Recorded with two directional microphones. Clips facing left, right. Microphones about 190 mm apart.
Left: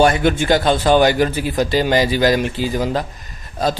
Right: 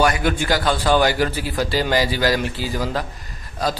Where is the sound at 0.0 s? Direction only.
25° left (ahead or behind).